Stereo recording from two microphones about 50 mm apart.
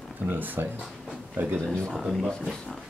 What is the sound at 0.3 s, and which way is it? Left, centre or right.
Speech, right.